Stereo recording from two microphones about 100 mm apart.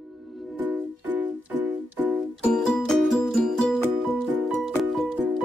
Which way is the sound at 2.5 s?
5° left (ahead or behind).